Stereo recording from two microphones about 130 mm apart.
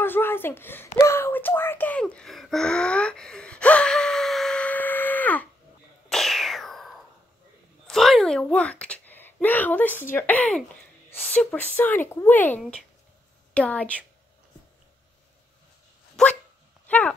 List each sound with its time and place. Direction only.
0.0 s speech: 15° left (ahead or behind)
0.9 s gasp: 20° left (ahead or behind)
6.0 s a sound: centre (ahead or behind)
10.1 s a woman's voice: 15° left (ahead or behind)
16.2 s dog: 5° left (ahead or behind)
16.8 s a sound: 10° left (ahead or behind)